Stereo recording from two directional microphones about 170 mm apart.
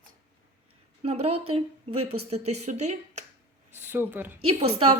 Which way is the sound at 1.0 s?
35° right (ahead or behind).